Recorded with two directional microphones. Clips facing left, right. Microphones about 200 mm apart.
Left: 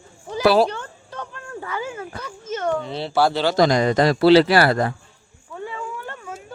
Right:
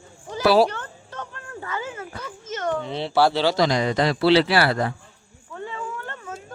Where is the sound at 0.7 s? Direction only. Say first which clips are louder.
Left 2 dB; 10° left (ahead or behind).